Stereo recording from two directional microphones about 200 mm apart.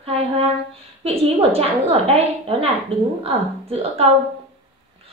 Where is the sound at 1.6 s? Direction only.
30° right (ahead or behind).